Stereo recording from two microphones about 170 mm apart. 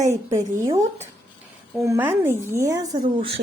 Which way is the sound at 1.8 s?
15° right (ahead or behind).